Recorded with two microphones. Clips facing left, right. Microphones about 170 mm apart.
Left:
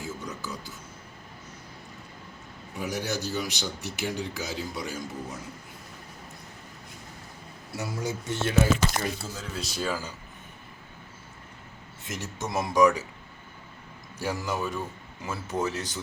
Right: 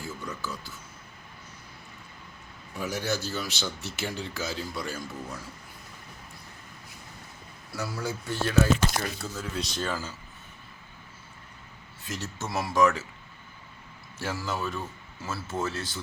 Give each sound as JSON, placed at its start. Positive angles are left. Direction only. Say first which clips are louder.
{"t": 0.0, "sound": "a sound", "louder": "even", "side_deg": 20}
{"t": 2.7, "sound": "speech", "louder": "right 1 dB", "side_deg": 15}
{"t": 7.7, "sound": "a man's voice", "louder": "left 1 dB", "side_deg": 20}
{"t": 8.9, "sound": "speech", "louder": "left 1 dB", "side_deg": 0}
{"t": 12.0, "sound": "speech", "louder": "left 1 dB", "side_deg": 20}
{"t": 14.2, "sound": "speech", "louder": "left 2 dB", "side_deg": 15}